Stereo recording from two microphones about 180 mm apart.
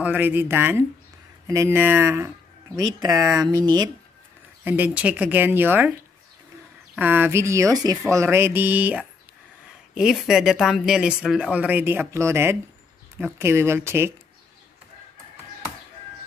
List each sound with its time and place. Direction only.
0.0 s speech: 10° right (ahead or behind)
4.6 s speech: 10° right (ahead or behind)
7.0 s speech: 10° right (ahead or behind)